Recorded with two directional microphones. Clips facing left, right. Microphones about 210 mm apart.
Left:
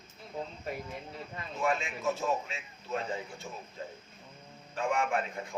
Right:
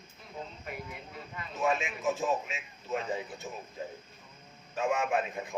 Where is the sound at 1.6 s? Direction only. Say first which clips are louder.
Right 1 dB; 20° right (ahead or behind).